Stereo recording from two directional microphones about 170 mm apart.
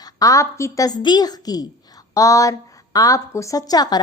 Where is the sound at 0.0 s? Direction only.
20° left (ahead or behind).